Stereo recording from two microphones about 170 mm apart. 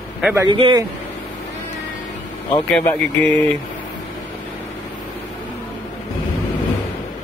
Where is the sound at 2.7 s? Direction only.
10° left (ahead or behind).